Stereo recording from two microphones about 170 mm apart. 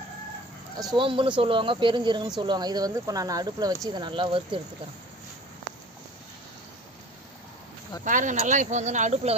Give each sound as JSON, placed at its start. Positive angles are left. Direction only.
{"t": 0.7, "sound": "speech", "side_deg": -25}
{"t": 8.0, "sound": "speech", "side_deg": -50}